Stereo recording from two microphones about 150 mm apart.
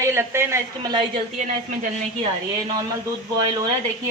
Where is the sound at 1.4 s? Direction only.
55° right (ahead or behind).